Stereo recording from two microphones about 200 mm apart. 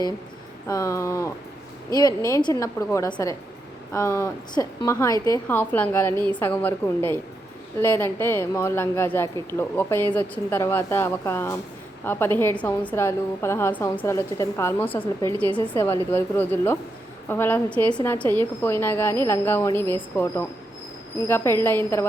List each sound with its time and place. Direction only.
0.7 s a woman's voice: 15° left (ahead or behind)